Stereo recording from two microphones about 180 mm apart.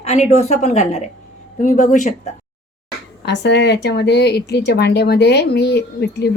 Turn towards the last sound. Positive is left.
turn(degrees=65)  # may be behind; listen again after turning